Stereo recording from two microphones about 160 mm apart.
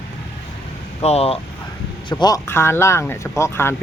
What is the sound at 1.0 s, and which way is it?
Speech, 40° left (ahead or behind).